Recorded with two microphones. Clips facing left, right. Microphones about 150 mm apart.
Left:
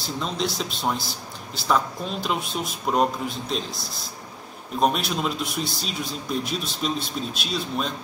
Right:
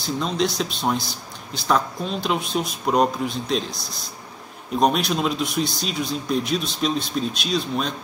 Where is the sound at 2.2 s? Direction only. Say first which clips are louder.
Right 4 dB; 5° left (ahead or behind).